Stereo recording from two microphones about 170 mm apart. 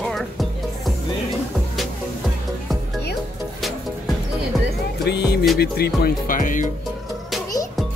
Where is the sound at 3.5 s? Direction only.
Centre (ahead or behind).